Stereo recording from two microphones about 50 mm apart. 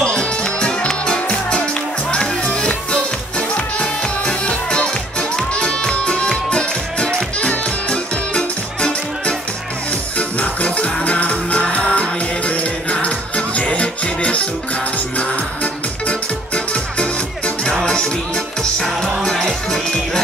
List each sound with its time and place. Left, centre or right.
0.0 s music: centre
19.2 s music: centre